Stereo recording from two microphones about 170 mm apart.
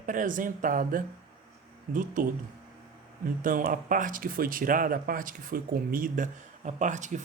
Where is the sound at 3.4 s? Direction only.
55° right (ahead or behind).